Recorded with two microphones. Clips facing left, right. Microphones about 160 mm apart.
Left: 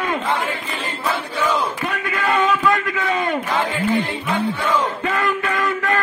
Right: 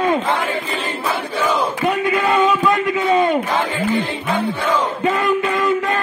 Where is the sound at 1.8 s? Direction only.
25° right (ahead or behind).